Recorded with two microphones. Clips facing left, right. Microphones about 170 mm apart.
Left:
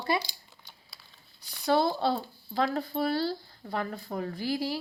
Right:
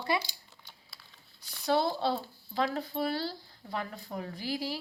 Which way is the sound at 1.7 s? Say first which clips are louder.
Left 3 dB; 50° left (ahead or behind).